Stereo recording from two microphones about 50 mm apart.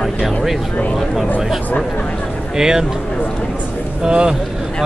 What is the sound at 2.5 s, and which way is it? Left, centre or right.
Speech, centre.